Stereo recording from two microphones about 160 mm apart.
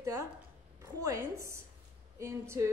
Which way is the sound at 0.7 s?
20° right (ahead or behind).